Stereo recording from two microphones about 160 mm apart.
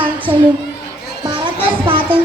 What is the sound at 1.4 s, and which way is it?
Music, 35° right (ahead or behind).